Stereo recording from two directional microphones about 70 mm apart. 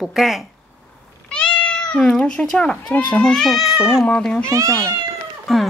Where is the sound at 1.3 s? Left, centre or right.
Centre.